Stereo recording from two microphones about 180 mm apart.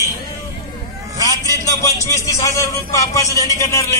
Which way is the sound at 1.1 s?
20° left (ahead or behind).